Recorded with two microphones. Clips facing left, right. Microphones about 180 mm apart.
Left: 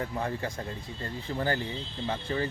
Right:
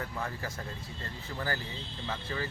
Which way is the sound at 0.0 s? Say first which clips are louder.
Left 5 dB; 30° left (ahead or behind).